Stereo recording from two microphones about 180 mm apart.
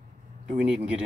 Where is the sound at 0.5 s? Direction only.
5° right (ahead or behind).